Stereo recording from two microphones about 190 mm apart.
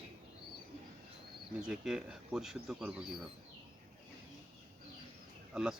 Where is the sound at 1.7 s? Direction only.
5° right (ahead or behind).